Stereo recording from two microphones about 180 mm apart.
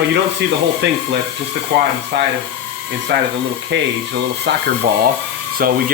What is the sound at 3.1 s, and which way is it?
Speech, 70° right (ahead or behind).